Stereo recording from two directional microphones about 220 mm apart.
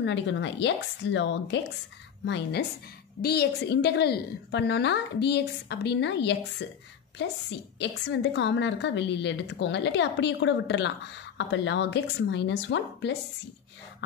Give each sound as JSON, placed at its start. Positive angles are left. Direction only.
{"t": 0.0, "sound": "a woman's voice", "side_deg": 55}